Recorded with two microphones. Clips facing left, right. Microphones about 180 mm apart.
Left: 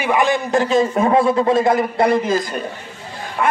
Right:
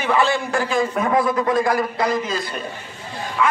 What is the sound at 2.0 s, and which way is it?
A man's voice, 55° left (ahead or behind).